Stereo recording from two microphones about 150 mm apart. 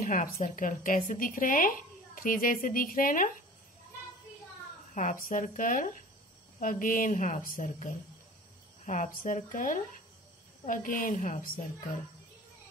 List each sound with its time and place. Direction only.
0.0 s speech: 70° left (ahead or behind)
0.4 s speech: 60° left (ahead or behind)
4.9 s speech: 55° left (ahead or behind)
8.9 s speech: 65° left (ahead or behind)